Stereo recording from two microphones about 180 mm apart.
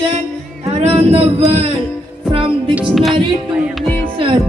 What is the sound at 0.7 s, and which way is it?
Speech, 35° right (ahead or behind).